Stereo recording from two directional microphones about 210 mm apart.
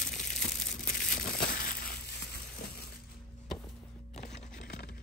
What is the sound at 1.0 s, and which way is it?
Crushing, 40° left (ahead or behind).